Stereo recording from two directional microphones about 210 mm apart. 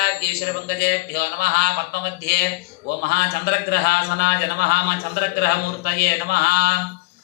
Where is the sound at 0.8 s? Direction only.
50° left (ahead or behind).